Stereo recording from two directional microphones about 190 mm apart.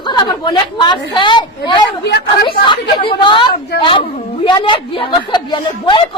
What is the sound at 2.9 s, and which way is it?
Speech, 25° left (ahead or behind).